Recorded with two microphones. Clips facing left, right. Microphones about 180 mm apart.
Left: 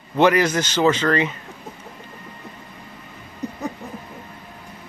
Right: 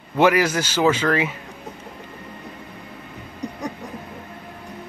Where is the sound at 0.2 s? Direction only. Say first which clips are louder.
Left 1 dB; 10° right (ahead or behind).